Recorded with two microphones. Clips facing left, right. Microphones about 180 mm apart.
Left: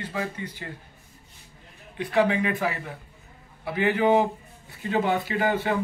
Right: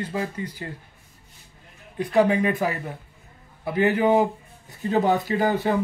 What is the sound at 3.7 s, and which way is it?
Speech, 40° right (ahead or behind).